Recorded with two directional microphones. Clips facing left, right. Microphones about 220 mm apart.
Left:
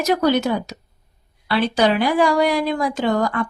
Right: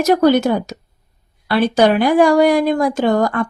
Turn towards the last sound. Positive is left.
turn(degrees=-50)  # may be behind; listen again after turning